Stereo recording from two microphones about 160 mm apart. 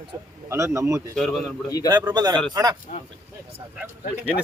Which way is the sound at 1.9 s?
25° right (ahead or behind).